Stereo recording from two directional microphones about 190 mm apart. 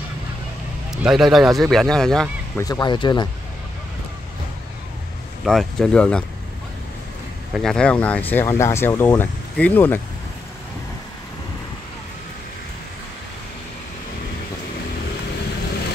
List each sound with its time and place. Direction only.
1.0 s speech: centre (ahead or behind)
2.6 s speech: 20° left (ahead or behind)
5.4 s speech: centre (ahead or behind)
7.5 s speech: 5° left (ahead or behind)